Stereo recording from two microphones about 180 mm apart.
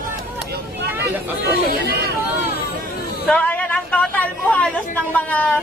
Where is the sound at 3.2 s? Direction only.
5° left (ahead or behind).